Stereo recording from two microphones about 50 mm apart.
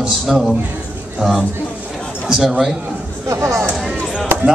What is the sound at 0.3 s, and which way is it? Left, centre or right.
Speech, centre.